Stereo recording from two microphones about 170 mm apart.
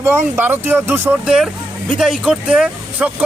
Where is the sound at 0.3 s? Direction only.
15° right (ahead or behind).